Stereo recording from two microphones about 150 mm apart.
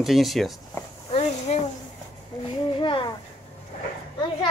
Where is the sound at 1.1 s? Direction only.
45° left (ahead or behind).